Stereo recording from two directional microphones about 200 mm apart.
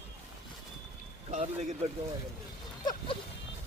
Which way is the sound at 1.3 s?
35° right (ahead or behind).